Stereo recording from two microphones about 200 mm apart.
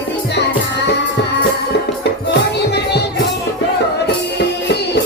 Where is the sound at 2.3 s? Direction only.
55° left (ahead or behind).